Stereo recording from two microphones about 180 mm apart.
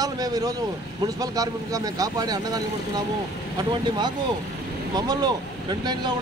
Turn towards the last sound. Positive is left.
turn(degrees=-20)  # may be behind; listen again after turning